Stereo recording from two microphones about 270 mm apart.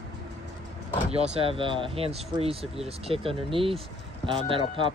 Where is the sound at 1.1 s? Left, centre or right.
Right.